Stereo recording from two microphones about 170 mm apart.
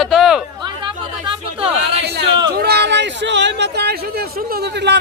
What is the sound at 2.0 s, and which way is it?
A man's voice, 75° right (ahead or behind).